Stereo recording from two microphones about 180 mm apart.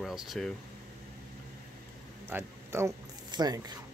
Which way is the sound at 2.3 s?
15° right (ahead or behind).